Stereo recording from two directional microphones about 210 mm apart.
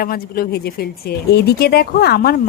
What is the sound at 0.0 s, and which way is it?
Speech, 45° left (ahead or behind).